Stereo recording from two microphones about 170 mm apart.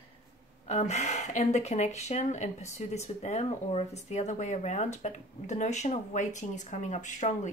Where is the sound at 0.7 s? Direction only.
45° left (ahead or behind).